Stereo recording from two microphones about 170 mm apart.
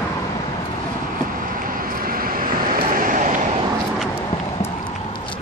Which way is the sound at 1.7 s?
55° right (ahead or behind).